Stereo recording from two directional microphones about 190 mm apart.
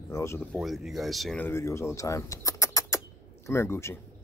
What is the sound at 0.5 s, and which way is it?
Speech, centre (ahead or behind).